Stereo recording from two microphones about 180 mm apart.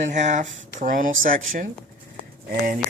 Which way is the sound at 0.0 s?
40° right (ahead or behind).